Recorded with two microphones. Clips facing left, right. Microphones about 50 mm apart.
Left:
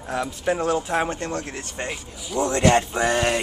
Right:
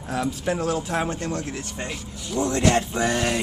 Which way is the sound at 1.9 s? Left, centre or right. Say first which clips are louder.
Left 1 dB; centre.